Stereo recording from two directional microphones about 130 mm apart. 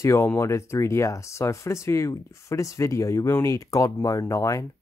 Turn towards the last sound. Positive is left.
turn(degrees=25)  # may be behind; listen again after turning